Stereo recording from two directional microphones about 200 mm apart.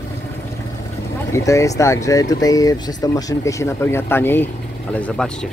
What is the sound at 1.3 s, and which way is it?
Speech, 15° left (ahead or behind).